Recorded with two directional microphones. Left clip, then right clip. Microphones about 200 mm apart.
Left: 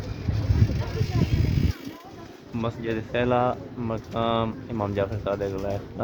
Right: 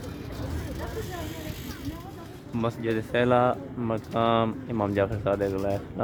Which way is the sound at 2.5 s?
50° right (ahead or behind).